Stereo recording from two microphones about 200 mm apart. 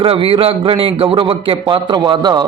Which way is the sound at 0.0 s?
25° right (ahead or behind).